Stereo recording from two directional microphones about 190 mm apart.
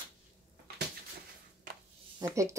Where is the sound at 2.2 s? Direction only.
15° right (ahead or behind).